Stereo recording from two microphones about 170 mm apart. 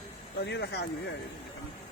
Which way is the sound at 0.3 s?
80° left.